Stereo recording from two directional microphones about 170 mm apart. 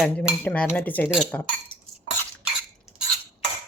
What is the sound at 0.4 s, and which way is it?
Cutlery, 10° left (ahead or behind).